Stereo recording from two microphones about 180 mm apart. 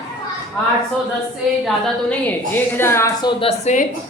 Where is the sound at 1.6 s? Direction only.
5° left (ahead or behind).